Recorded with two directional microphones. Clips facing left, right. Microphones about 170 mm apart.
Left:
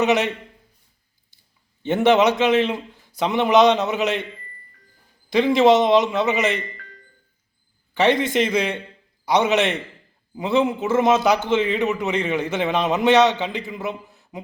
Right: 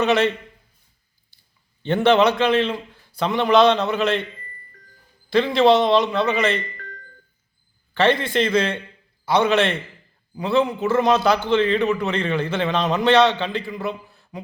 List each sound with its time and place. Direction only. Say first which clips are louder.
0.0 s a man's voice: right 1 dB; 15° left (ahead or behind)
1.8 s a man's voice: even; 15° left (ahead or behind)
5.3 s a man's voice: left 1 dB; 15° left (ahead or behind)
7.9 s a man's voice: left 1 dB; 15° left (ahead or behind)